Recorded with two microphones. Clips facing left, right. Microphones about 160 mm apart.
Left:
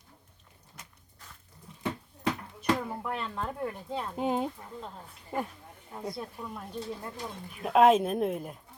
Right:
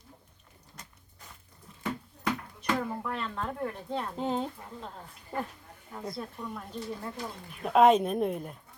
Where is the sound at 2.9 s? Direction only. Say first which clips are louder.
Even; 15° left (ahead or behind).